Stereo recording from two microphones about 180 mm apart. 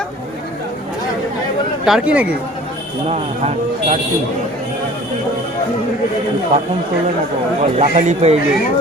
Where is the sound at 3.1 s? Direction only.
35° right (ahead or behind).